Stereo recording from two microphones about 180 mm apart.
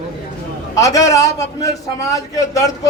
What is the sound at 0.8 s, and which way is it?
A man's voice, 20° left (ahead or behind).